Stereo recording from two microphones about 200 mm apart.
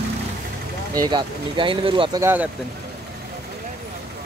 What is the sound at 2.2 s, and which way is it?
Speech, 10° right (ahead or behind).